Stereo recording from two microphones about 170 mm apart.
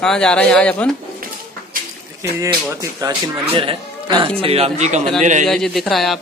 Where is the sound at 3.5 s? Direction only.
30° right (ahead or behind).